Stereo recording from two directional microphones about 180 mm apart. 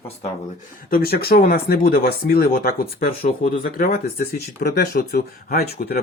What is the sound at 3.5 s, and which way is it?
Speech, 50° left (ahead or behind).